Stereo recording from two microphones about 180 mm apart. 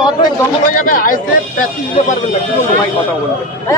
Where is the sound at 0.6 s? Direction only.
50° left (ahead or behind).